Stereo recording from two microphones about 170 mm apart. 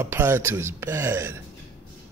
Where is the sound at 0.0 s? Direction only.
15° right (ahead or behind).